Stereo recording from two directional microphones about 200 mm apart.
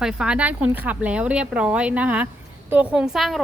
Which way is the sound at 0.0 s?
5° right (ahead or behind).